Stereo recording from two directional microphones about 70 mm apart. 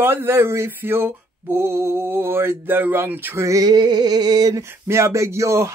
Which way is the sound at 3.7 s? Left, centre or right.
Right.